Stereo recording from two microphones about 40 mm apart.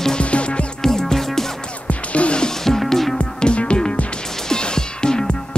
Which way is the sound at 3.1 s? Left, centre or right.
Left.